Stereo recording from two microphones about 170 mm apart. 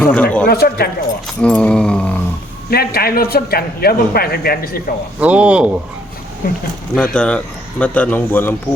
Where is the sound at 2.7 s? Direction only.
65° left (ahead or behind).